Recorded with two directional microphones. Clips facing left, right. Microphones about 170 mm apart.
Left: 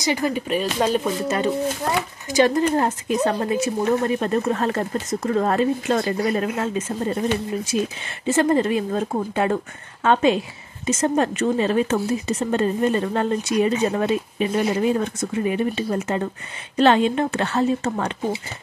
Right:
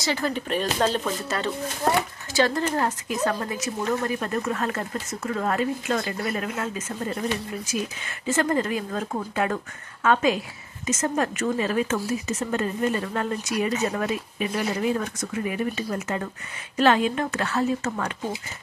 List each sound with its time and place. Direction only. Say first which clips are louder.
0.0 s speech: left 4 dB; 15° left (ahead or behind); by 7.2 s 30° left (ahead or behind)
8.4 s speech: left 6 dB; 25° left (ahead or behind)